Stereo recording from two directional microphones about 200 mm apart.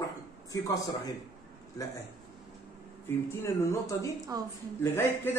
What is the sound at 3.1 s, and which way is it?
Speech, 10° left (ahead or behind).